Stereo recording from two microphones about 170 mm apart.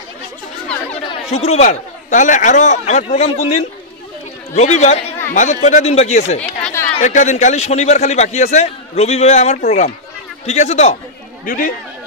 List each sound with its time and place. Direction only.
1.3 s speech: 40° left (ahead or behind)
4.6 s a man's voice: 40° left (ahead or behind)
6.6 s chatter: 15° left (ahead or behind)
7.0 s a man's voice: 45° left (ahead or behind)
11.4 s speech: 55° left (ahead or behind)